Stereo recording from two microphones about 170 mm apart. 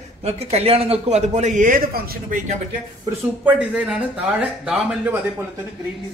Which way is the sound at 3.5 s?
5° right (ahead or behind).